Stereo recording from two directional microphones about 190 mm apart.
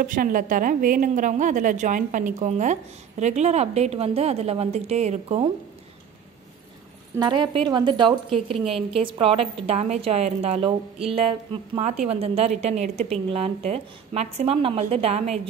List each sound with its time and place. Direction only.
0.0 s a woman's voice: 45° right (ahead or behind)
7.2 s a woman's voice: 25° right (ahead or behind)
11.7 s a woman's voice: 35° right (ahead or behind)